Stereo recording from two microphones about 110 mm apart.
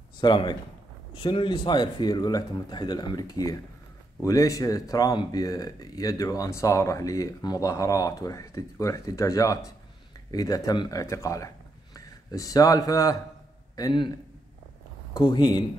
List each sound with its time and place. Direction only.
0.2 s speech: 45° left (ahead or behind)
15.1 s speech: 40° left (ahead or behind)